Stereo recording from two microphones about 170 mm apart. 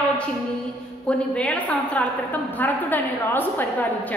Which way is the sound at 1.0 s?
5° left (ahead or behind).